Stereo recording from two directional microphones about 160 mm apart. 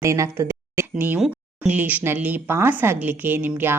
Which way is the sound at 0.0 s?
15° right (ahead or behind).